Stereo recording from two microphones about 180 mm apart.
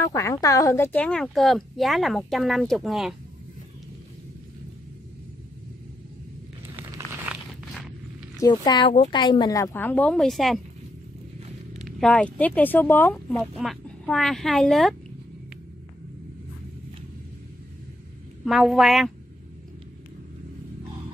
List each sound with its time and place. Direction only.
0.0 s speech: 15° left (ahead or behind); by 3.2 s centre (ahead or behind)
8.4 s speech: 25° left (ahead or behind); by 10.6 s centre (ahead or behind)
11.8 s speech: 5° left (ahead or behind)
18.4 s speech: centre (ahead or behind)